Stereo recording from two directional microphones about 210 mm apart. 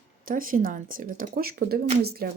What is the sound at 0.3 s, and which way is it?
Speech, 40° right (ahead or behind).